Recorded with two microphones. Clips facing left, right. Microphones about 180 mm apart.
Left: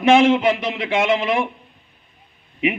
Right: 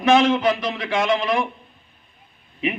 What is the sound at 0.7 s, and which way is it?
Speech, 25° left (ahead or behind).